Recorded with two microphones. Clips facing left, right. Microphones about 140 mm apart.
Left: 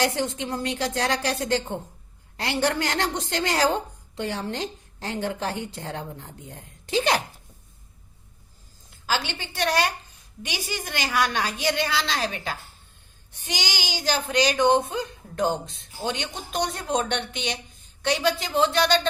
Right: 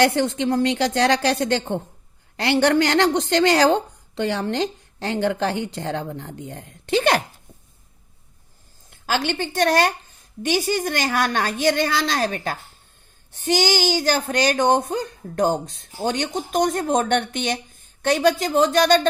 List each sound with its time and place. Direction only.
0.0 s a woman's voice: 65° right (ahead or behind)
8.9 s speech: 50° right (ahead or behind)